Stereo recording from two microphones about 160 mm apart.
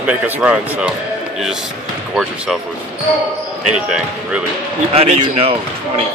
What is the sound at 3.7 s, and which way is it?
Speech, 5° right (ahead or behind).